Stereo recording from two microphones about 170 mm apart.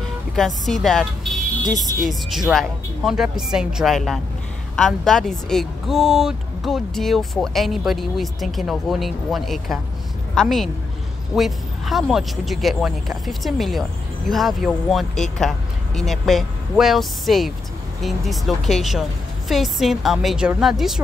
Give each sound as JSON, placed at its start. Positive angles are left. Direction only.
{"t": 0.0, "sound": "speech", "side_deg": 0}
{"t": 1.7, "sound": "speech", "side_deg": 45}
{"t": 2.0, "sound": "speech", "side_deg": 0}